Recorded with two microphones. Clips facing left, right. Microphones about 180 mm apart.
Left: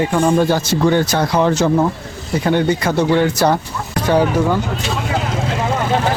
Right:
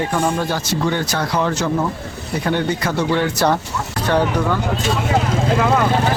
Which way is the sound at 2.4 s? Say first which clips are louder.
Left 4 dB; 15° left (ahead or behind).